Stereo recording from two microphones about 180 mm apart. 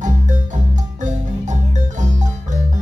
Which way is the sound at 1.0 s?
40° right (ahead or behind).